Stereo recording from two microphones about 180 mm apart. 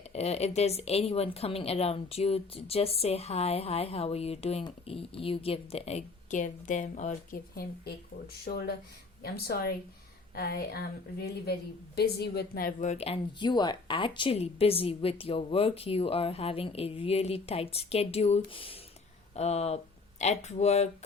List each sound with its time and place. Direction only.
0.1 s a woman's voice: 35° left (ahead or behind)